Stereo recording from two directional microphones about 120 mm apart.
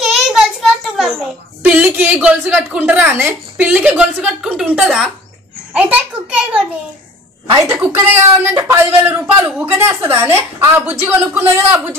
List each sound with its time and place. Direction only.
0.0 s child singing: 5° right (ahead or behind)
1.6 s a woman's voice: 15° right (ahead or behind)
7.6 s speech: 20° right (ahead or behind)